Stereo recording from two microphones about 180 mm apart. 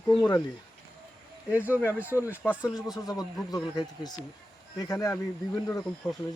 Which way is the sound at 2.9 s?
20° left (ahead or behind).